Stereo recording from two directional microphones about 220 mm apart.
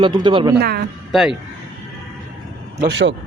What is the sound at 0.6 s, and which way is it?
Speech, 45° right (ahead or behind).